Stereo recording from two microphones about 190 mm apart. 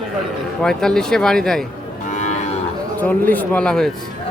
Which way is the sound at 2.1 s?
40° left (ahead or behind).